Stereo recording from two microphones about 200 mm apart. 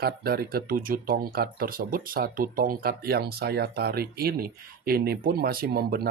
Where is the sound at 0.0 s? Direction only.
50° right (ahead or behind).